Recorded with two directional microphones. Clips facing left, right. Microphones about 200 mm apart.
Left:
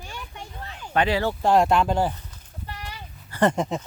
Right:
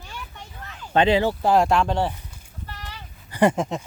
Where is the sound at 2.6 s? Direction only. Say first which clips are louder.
Left 2 dB; 10° left (ahead or behind).